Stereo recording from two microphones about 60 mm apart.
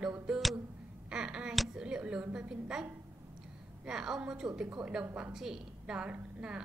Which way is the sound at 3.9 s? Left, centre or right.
Centre.